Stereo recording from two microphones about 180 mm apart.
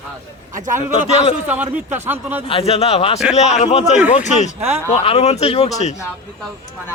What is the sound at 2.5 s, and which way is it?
Speech, 35° left (ahead or behind).